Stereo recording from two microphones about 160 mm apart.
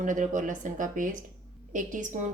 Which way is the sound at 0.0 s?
55° right (ahead or behind).